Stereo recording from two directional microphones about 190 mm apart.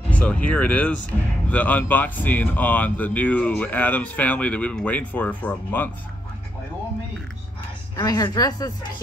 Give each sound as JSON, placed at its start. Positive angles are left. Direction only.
{"t": 0.1, "sound": "speech", "side_deg": 5}
{"t": 7.9, "sound": "speech", "side_deg": 20}